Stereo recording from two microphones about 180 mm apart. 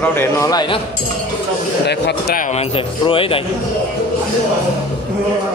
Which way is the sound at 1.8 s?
70° left (ahead or behind).